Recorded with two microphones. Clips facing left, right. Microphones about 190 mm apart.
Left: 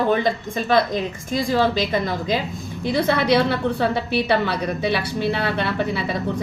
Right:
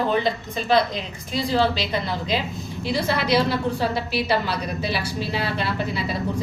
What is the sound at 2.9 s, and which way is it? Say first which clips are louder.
A woman's voice: left 4 dB; 55° left (ahead or behind).